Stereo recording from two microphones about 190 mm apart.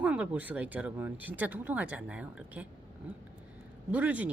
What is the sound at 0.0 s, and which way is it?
A woman's voice, 5° right (ahead or behind).